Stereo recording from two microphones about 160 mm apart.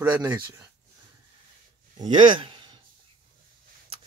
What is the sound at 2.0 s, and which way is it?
Speech, 30° right (ahead or behind).